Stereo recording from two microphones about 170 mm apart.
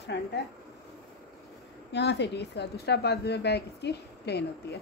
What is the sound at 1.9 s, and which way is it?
A woman's voice, 90° left.